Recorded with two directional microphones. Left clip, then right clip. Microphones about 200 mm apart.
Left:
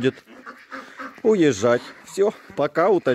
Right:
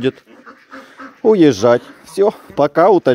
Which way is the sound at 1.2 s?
10° right (ahead or behind).